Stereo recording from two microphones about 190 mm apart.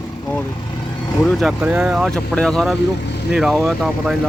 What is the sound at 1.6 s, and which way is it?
Speech, 5° right (ahead or behind).